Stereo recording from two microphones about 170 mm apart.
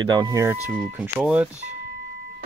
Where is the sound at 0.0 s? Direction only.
25° right (ahead or behind); by 1.5 s 5° right (ahead or behind).